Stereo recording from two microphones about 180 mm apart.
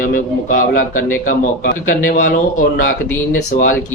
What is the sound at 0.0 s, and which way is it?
Speech, 50° left (ahead or behind).